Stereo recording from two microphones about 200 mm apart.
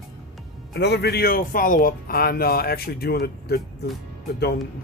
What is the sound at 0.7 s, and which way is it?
A man's voice, 60° left (ahead or behind).